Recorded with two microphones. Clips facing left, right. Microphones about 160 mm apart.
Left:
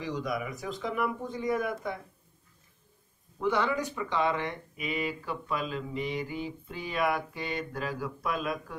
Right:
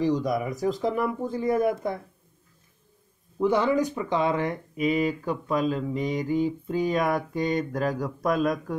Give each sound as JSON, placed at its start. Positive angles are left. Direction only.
{"t": 0.0, "sound": "speech", "side_deg": -40}
{"t": 3.3, "sound": "speech", "side_deg": -40}